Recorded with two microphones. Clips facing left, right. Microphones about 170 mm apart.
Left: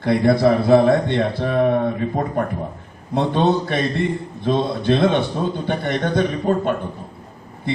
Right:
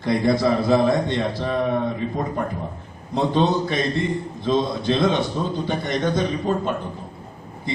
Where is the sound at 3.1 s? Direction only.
60° left (ahead or behind).